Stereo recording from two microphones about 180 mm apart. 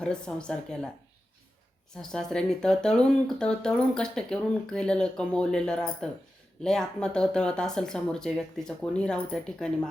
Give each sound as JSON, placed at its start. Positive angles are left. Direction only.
{"t": 0.0, "sound": "speech", "side_deg": 5}
{"t": 2.0, "sound": "speech", "side_deg": 5}